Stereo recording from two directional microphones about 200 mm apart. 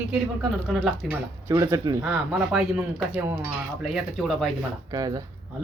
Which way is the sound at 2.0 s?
5° right (ahead or behind).